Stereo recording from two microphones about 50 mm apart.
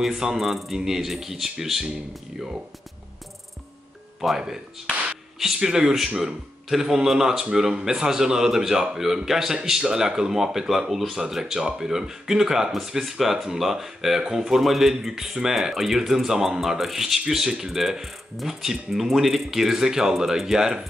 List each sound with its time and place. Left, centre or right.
0.0 s speech: centre
4.2 s speech: centre